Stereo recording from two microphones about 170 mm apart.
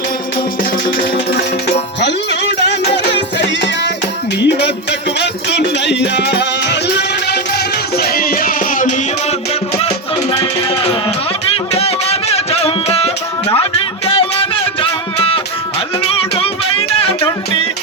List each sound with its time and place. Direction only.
2.0 s music: 90° left; by 9.0 s 50° left (ahead or behind)
10.3 s music: 30° left (ahead or behind)
14.1 s music: 35° left (ahead or behind)
17.0 s music: 35° left (ahead or behind)